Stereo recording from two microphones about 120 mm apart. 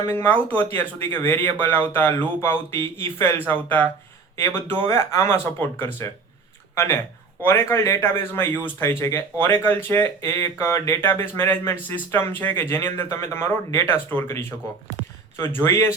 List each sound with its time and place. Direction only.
0.1 s a man's voice: 15° left (ahead or behind)